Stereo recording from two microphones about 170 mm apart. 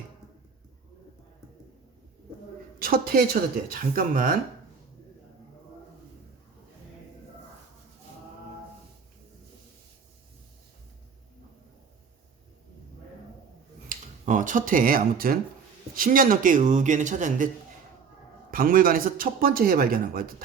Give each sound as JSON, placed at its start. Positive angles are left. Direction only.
{"t": 2.7, "sound": "a woman's voice", "side_deg": -60}
{"t": 13.8, "sound": "speech", "side_deg": -50}
{"t": 18.5, "sound": "speech", "side_deg": -55}